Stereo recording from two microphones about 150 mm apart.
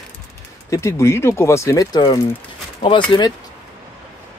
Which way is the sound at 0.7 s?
20° left (ahead or behind).